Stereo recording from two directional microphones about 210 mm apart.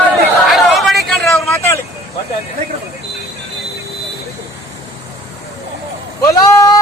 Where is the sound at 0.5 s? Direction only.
Centre (ahead or behind).